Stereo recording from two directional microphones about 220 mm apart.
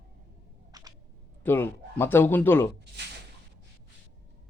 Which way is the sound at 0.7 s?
15° right (ahead or behind).